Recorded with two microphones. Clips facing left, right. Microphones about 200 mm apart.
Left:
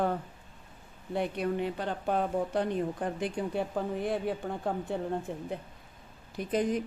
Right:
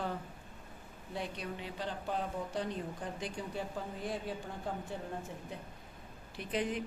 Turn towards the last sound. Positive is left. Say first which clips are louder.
# left 7 dB
turn(degrees=45)  # may be behind; listen again after turning